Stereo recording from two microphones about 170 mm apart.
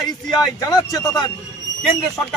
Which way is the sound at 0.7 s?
20° left (ahead or behind).